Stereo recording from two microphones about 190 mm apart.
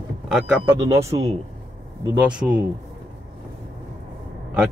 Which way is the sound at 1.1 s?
20° right (ahead or behind).